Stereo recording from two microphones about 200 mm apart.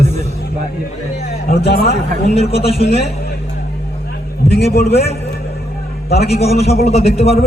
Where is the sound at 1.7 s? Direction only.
50° left (ahead or behind).